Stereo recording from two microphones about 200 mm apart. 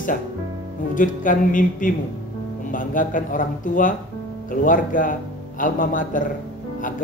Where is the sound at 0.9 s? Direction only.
40° left (ahead or behind).